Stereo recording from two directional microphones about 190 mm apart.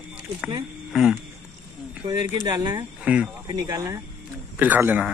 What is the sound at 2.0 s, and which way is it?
Speech, 20° right (ahead or behind).